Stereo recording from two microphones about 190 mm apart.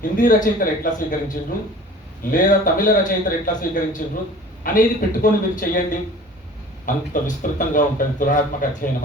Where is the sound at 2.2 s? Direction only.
45° left (ahead or behind).